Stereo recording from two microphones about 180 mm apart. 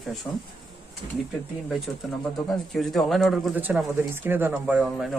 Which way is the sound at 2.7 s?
Centre (ahead or behind).